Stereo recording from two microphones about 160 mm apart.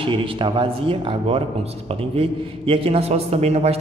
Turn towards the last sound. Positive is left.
turn(degrees=-40)  # may be behind; listen again after turning